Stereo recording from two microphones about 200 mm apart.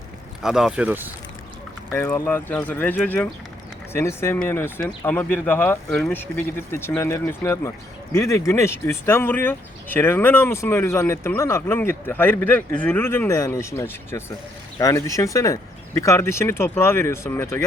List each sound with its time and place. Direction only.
0.4 s speech: 5° right (ahead or behind)
1.9 s speech: 10° left (ahead or behind)